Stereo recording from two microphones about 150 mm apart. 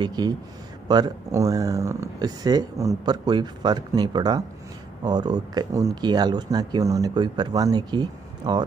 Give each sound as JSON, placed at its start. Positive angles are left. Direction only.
{"t": 0.0, "sound": "speech", "side_deg": -30}